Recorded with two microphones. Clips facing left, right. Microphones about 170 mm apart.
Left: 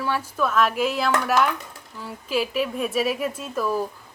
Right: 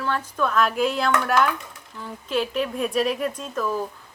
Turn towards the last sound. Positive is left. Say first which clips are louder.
# left 1 dB
turn(degrees=10)  # may be behind; listen again after turning